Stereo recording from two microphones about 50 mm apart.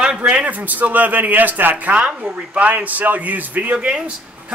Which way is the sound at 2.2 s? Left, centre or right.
Right.